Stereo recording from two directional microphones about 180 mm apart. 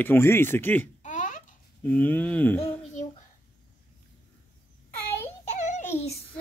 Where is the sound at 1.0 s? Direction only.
45° left (ahead or behind).